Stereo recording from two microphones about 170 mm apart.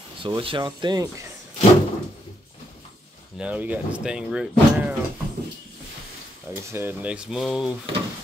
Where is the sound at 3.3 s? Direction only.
10° right (ahead or behind).